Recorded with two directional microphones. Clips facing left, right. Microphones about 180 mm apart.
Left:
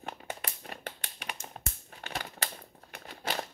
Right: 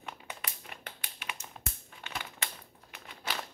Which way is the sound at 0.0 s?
45° left (ahead or behind).